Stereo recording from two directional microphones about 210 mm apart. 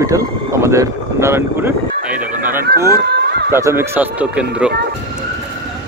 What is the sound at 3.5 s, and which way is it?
Speech, 10° right (ahead or behind).